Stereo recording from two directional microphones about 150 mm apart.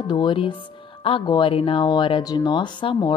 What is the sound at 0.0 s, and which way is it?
A woman's voice, 30° left (ahead or behind).